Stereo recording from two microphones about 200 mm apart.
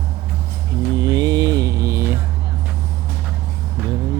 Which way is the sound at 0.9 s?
20° right (ahead or behind).